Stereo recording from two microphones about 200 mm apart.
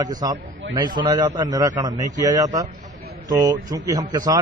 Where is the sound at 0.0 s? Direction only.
20° right (ahead or behind).